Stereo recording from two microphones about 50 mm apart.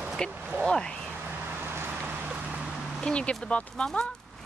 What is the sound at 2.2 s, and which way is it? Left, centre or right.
Vehicle, right.